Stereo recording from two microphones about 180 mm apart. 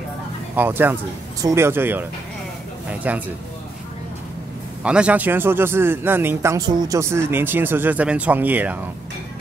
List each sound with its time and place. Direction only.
0.6 s a man's voice: 10° right (ahead or behind)
4.8 s a man's voice: 5° right (ahead or behind)